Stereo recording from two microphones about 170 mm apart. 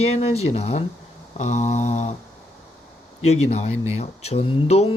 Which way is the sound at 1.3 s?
45° left (ahead or behind).